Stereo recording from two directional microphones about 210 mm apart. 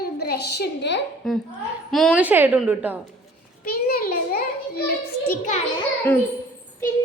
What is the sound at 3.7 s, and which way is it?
Speech, 45° left (ahead or behind).